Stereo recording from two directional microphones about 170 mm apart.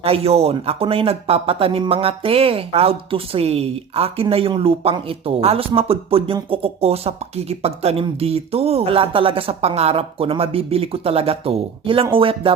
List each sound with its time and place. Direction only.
0.0 s speech: 35° right (ahead or behind)